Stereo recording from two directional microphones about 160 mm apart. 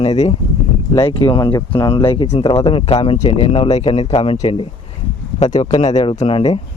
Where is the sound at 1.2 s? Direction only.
30° left (ahead or behind).